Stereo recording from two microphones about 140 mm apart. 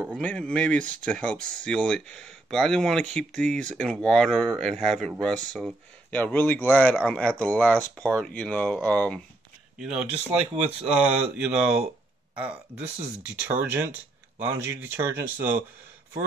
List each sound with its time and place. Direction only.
0.1 s speech: 10° left (ahead or behind)
9.8 s speech: 5° right (ahead or behind)
10.0 s speech: 45° right (ahead or behind)
11.3 s speech: 5° right (ahead or behind)